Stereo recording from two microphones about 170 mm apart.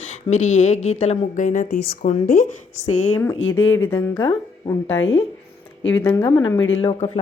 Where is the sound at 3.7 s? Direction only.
15° left (ahead or behind).